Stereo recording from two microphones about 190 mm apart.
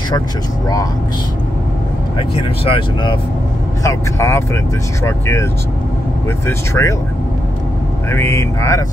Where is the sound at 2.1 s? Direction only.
25° left (ahead or behind).